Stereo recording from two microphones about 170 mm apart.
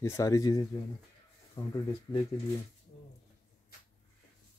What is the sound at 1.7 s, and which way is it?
Speech, 20° left (ahead or behind).